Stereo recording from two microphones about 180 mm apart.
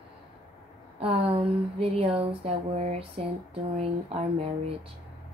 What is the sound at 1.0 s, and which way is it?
Speech, 30° right (ahead or behind).